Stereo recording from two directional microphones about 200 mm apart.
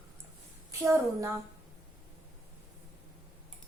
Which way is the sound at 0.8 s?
15° right (ahead or behind).